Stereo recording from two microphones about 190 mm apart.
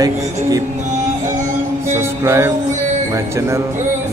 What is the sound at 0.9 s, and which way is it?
Music, 40° right (ahead or behind).